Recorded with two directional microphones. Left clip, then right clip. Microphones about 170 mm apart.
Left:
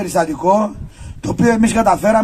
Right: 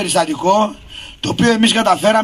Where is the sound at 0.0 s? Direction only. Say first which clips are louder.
Even; 20° left (ahead or behind).